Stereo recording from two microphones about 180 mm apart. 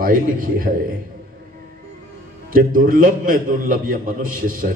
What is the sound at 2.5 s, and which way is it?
A man's voice, 50° right (ahead or behind).